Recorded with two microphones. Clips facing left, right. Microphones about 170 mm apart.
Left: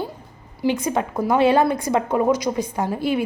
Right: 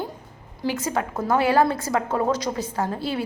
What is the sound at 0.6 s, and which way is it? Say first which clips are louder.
A woman's voice: left 4 dB; 20° left (ahead or behind).